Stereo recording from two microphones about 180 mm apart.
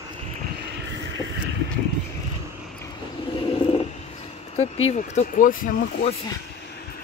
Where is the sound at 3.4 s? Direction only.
30° left (ahead or behind).